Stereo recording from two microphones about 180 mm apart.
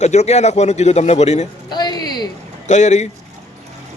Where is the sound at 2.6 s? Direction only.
40° left (ahead or behind).